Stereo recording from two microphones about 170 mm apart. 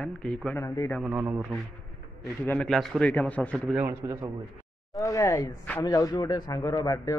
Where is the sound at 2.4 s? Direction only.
5° left (ahead or behind).